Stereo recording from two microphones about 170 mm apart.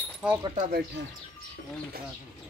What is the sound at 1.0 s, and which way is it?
Speech, 90° right.